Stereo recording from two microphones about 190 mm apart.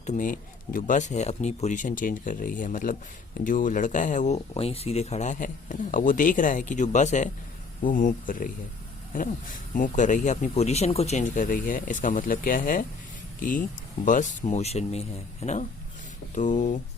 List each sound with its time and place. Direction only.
0.0 s speech: 40° left (ahead or behind)